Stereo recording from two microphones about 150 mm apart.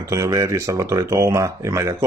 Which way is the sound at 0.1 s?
20° right (ahead or behind).